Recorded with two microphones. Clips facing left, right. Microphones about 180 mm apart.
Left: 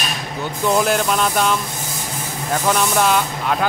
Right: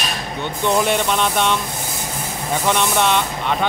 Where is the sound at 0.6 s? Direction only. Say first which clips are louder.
Left 1 dB; centre (ahead or behind).